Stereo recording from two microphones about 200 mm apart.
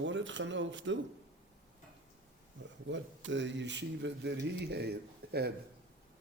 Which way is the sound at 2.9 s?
65° right (ahead or behind).